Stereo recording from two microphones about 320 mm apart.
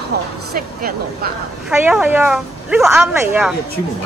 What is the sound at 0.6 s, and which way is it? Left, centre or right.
Speech, right.